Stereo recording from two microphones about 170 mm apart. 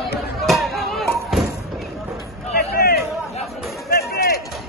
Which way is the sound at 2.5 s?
65° left (ahead or behind).